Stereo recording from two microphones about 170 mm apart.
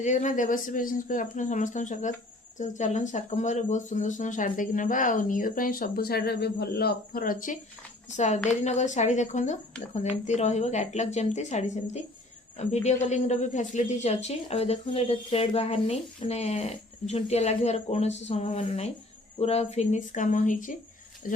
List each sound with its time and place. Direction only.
0.0 s speech: 45° left (ahead or behind)